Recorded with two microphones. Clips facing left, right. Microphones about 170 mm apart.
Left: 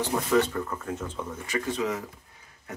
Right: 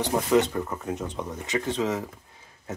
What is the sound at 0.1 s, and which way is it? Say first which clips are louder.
Speech: right 3 dB; 20° right (ahead or behind).